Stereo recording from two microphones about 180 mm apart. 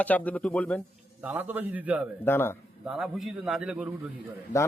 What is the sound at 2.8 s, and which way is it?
A man's voice, centre (ahead or behind).